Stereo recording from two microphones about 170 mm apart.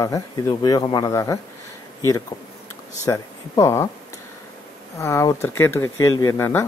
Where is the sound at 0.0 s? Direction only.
20° left (ahead or behind).